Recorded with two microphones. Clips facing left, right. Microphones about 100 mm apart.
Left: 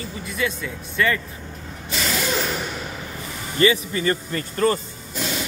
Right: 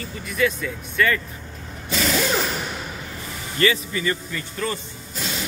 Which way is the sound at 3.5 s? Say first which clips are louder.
Left 2 dB; 25° left (ahead or behind).